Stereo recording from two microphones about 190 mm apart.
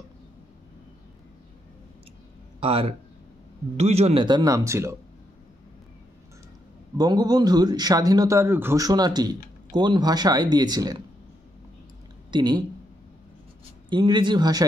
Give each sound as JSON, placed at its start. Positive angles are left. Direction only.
{"t": 2.6, "sound": "speech", "side_deg": -30}
{"t": 7.0, "sound": "speech", "side_deg": -20}
{"t": 12.3, "sound": "speech", "side_deg": -20}
{"t": 13.8, "sound": "speech", "side_deg": -25}